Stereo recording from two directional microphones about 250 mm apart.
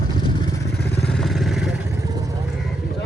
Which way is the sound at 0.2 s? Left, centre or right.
Centre.